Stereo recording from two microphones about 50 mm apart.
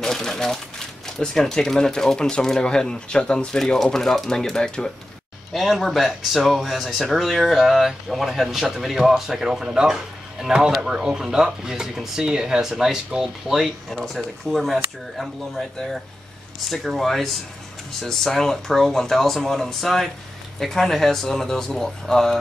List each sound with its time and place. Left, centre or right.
0.0 s speech: centre
5.5 s speech: centre